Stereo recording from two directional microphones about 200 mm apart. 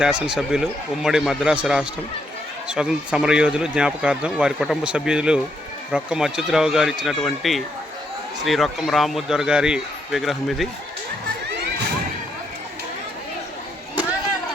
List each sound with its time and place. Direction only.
0.0 s speech: 5° right (ahead or behind)